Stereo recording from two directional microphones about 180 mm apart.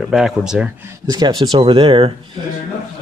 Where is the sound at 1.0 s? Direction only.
20° right (ahead or behind).